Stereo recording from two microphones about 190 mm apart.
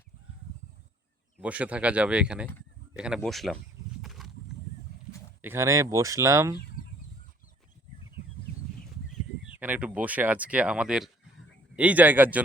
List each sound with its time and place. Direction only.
1.4 s speech: 5° right (ahead or behind)
4.0 s horse: centre (ahead or behind)
4.9 s a sound: 60° right (ahead or behind)
5.4 s speech: 15° right (ahead or behind)
9.6 s speech: 10° right (ahead or behind)